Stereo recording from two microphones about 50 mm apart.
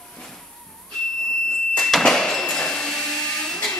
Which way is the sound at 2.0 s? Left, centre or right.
Centre.